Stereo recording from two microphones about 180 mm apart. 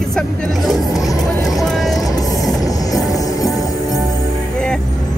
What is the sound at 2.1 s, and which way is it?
Vehicle, 20° left (ahead or behind).